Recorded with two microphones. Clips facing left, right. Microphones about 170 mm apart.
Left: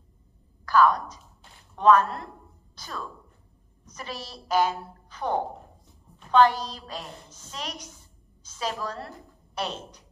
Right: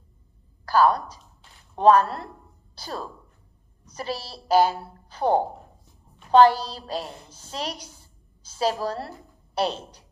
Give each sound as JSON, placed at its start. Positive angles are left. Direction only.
{"t": 0.7, "sound": "a woman's voice", "side_deg": -30}